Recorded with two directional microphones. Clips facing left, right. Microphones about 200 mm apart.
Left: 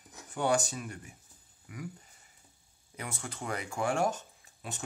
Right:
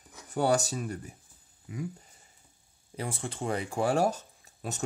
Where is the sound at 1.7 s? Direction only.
25° right (ahead or behind).